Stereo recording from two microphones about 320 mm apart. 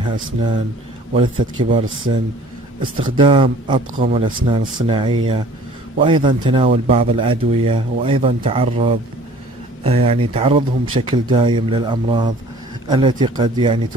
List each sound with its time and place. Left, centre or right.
0.0 s speech: centre